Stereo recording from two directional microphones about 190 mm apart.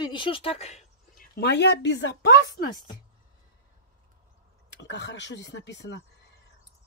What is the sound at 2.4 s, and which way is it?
Speech, 20° left (ahead or behind).